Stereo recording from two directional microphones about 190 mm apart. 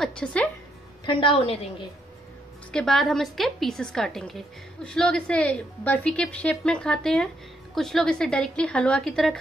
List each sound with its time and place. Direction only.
0.0 s a woman's voice: 5° left (ahead or behind)
1.0 s a woman's voice: 25° left (ahead or behind)
2.7 s a woman's voice: centre (ahead or behind)